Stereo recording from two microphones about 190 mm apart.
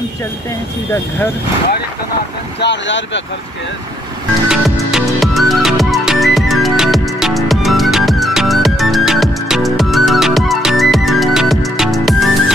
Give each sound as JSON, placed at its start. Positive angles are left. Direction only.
{"t": 2.6, "sound": "speech", "side_deg": 70}
{"t": 4.5, "sound": "music", "side_deg": 0}